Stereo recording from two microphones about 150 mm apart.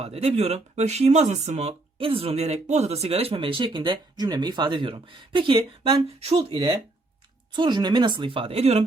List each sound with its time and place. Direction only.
0.0 s speech: 45° right (ahead or behind)